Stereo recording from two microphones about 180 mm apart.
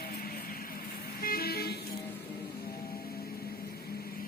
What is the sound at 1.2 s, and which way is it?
Vehicle, 55° left (ahead or behind).